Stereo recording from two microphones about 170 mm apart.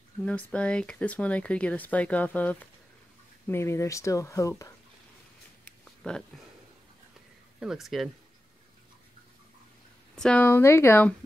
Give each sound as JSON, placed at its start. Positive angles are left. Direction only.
{"t": 0.5, "sound": "speech", "side_deg": 5}
{"t": 6.0, "sound": "speech", "side_deg": 5}
{"t": 7.6, "sound": "speech", "side_deg": 0}
{"t": 10.1, "sound": "speech", "side_deg": 5}